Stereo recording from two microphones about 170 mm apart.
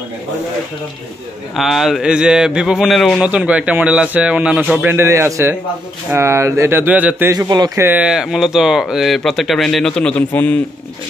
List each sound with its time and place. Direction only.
1.6 s speech: centre (ahead or behind)
7.3 s speech: 25° right (ahead or behind); by 10.6 s 10° left (ahead or behind)